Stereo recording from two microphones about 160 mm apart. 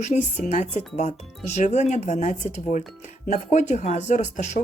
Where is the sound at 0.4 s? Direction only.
45° left (ahead or behind).